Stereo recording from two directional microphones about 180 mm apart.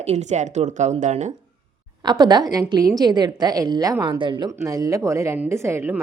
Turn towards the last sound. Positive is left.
turn(degrees=-10)  # may be behind; listen again after turning